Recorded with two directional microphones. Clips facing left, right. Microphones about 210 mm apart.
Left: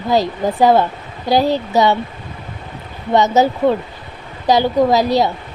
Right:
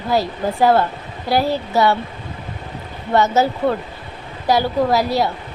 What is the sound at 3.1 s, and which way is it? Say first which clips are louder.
A woman's voice: left 3 dB; 20° left (ahead or behind).